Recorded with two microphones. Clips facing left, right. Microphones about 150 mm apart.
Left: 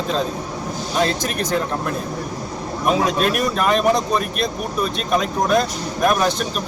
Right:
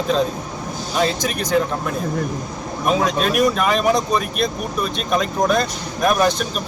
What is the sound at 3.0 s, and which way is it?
Speech, centre (ahead or behind).